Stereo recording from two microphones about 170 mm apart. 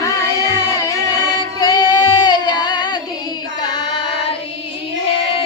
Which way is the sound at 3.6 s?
25° left (ahead or behind).